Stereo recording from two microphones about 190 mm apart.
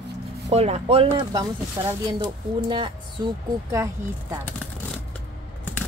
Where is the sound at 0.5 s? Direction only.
35° right (ahead or behind); by 4.4 s 15° right (ahead or behind).